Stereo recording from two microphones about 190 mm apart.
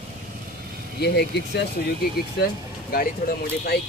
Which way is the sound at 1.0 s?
60° left (ahead or behind).